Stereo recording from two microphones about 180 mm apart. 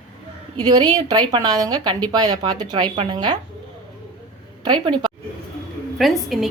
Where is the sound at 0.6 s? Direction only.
20° right (ahead or behind).